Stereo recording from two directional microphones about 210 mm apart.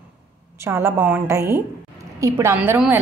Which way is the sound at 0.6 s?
10° right (ahead or behind).